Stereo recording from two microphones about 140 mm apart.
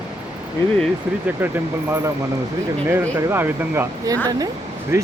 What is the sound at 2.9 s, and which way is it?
Speech, 15° right (ahead or behind).